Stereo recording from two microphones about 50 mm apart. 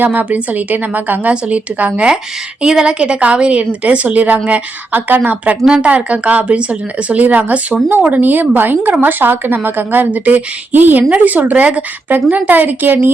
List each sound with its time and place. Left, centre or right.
0.0 s a woman's voice: right
2.6 s a woman's voice: centre; by 5.5 s right
5.6 s a woman's voice: right